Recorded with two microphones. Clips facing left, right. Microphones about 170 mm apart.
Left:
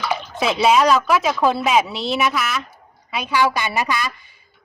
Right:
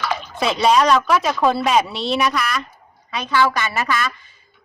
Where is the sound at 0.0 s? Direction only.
5° left (ahead or behind).